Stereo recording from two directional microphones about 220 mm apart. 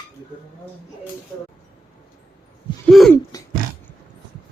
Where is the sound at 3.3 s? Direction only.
15° left (ahead or behind).